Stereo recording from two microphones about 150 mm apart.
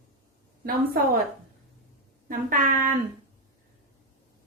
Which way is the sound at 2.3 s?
70° right (ahead or behind).